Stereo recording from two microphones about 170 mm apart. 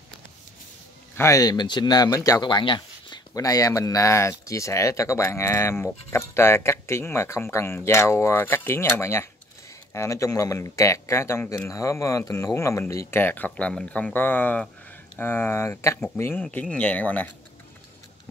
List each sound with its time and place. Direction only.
1.1 s speech: 20° left (ahead or behind)